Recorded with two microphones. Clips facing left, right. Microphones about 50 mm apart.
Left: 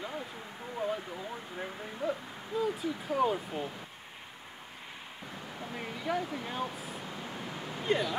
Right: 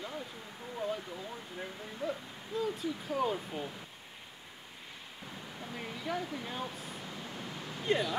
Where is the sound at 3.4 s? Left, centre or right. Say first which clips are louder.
Left 3 dB; left.